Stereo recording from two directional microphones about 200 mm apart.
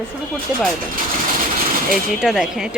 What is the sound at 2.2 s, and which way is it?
Speech, centre (ahead or behind).